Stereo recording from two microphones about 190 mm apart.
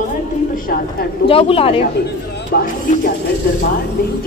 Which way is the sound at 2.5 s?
55° left (ahead or behind).